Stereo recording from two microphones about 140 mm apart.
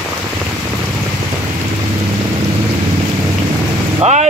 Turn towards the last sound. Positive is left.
turn(degrees=-50)  # may be behind; listen again after turning